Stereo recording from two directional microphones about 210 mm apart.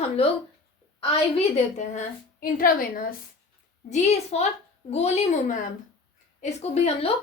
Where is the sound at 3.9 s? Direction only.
30° left (ahead or behind).